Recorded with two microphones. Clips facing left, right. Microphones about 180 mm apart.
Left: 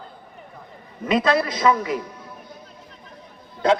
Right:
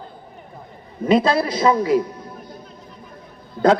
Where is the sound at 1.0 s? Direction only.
30° right (ahead or behind).